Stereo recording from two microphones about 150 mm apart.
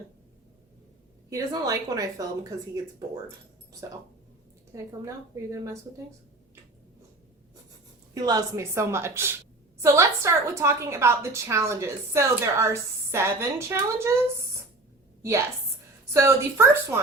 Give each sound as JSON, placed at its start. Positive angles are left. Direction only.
{"t": 1.3, "sound": "a woman's voice", "side_deg": -25}
{"t": 4.7, "sound": "a woman's voice", "side_deg": -20}
{"t": 8.1, "sound": "a woman's voice", "side_deg": -25}
{"t": 15.2, "sound": "a woman's voice", "side_deg": -20}